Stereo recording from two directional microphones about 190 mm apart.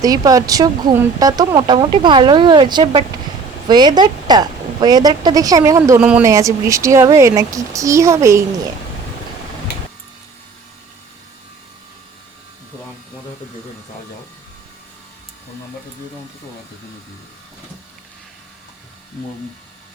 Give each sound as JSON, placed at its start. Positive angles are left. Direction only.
{"t": 0.0, "sound": "speech", "side_deg": -20}
{"t": 6.0, "sound": "speech", "side_deg": -5}
{"t": 6.2, "sound": "a woman's voice", "side_deg": -15}